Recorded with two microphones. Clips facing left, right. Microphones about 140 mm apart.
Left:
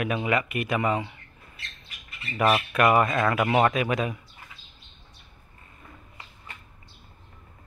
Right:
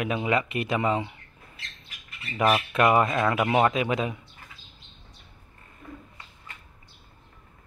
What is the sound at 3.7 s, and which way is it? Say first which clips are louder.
Speech: even; 25° right (ahead or behind).